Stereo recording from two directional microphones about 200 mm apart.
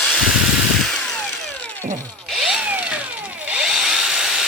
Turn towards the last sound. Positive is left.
turn(degrees=-5)  # may be behind; listen again after turning